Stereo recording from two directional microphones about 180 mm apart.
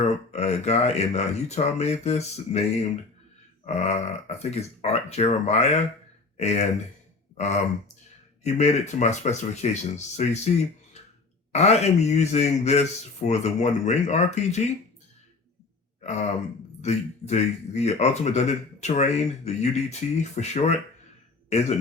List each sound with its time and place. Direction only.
0.0 s speech: 35° left (ahead or behind)
16.0 s throat clearing: 40° left (ahead or behind)
16.8 s speech: 40° left (ahead or behind)